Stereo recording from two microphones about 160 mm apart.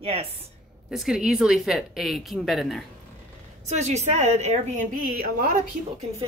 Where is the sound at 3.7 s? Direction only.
45° right (ahead or behind); by 5.5 s 65° right (ahead or behind).